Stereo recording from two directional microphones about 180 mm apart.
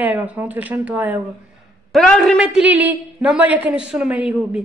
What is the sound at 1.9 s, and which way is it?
A man's voice, 5° left (ahead or behind).